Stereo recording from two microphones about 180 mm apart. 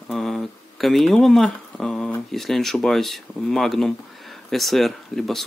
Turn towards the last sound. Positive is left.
turn(degrees=0)  # may be behind; listen again after turning